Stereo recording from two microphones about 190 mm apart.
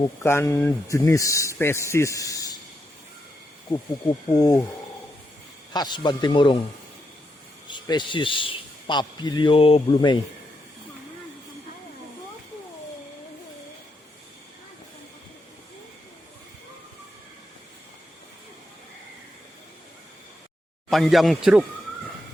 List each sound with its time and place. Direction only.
0.0 s speech: 15° left (ahead or behind)
3.7 s a man's voice: 20° left (ahead or behind)
5.7 s a man's voice: 20° left (ahead or behind)
7.7 s a man's voice: 25° left (ahead or behind)
20.9 s speech: centre (ahead or behind)